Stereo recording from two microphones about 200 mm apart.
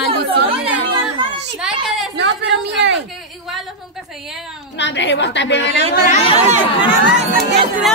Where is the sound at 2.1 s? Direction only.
65° right (ahead or behind).